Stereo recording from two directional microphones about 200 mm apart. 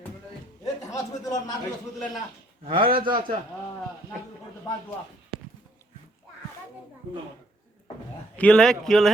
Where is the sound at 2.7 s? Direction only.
45° right (ahead or behind).